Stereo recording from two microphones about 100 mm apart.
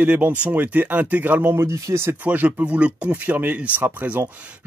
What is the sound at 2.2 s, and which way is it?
Speech, 15° right (ahead or behind).